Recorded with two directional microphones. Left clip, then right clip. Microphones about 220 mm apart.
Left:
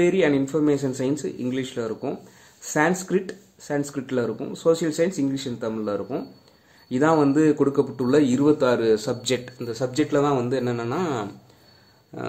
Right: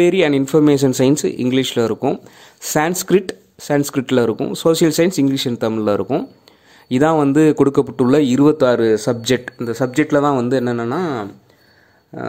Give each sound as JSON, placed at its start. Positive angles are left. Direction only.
{"t": 0.0, "sound": "a man's voice", "side_deg": -45}